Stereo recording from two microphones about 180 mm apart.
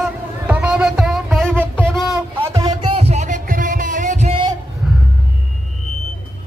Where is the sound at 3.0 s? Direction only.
40° right (ahead or behind).